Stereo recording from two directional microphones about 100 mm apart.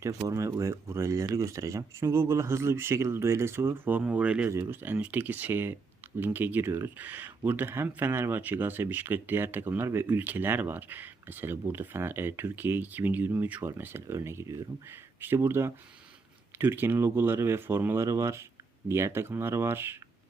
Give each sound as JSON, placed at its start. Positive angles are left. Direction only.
{"t": 0.0, "sound": "speech", "side_deg": -35}